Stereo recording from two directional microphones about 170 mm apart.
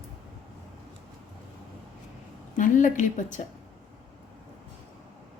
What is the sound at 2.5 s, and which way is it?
Speech, 50° left (ahead or behind).